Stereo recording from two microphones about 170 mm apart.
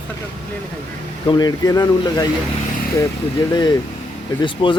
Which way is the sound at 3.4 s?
25° left (ahead or behind).